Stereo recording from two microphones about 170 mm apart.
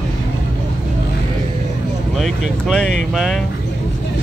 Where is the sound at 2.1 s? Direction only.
Centre (ahead or behind).